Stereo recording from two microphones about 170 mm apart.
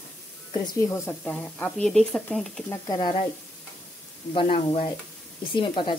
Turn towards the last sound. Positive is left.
turn(degrees=30)  # may be behind; listen again after turning